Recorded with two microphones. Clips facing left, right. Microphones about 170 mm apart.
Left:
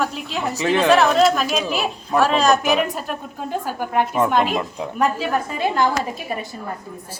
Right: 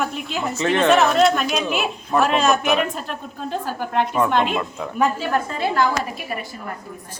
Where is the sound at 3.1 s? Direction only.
10° left (ahead or behind).